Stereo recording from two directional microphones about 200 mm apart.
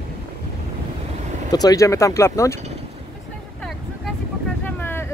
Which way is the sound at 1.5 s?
20° left (ahead or behind).